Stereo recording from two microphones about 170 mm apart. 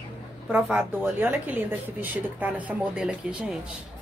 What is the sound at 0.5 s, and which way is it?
Speech, 10° right (ahead or behind).